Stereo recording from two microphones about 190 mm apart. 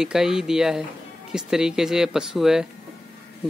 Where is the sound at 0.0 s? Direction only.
5° right (ahead or behind).